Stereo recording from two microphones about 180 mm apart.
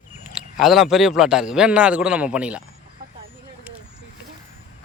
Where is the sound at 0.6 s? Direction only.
Centre (ahead or behind).